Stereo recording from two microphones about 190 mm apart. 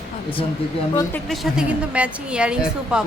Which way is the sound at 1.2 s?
Centre (ahead or behind).